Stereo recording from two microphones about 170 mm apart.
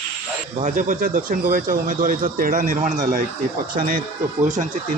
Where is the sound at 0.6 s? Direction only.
50° right (ahead or behind).